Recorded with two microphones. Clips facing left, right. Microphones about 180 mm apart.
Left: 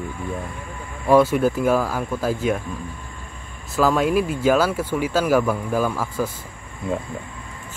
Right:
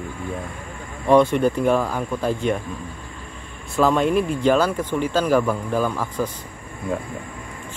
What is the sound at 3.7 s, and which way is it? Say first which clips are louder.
Speech: even; centre (ahead or behind).